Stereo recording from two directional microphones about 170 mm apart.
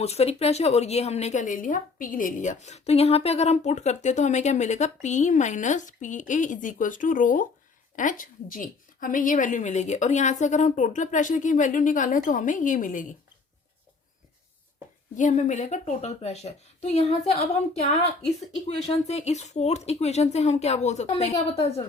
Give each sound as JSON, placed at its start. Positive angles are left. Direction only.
{"t": 0.0, "sound": "a woman's voice", "side_deg": 40}
{"t": 15.1, "sound": "speech", "side_deg": 45}
{"t": 18.8, "sound": "speech", "side_deg": 40}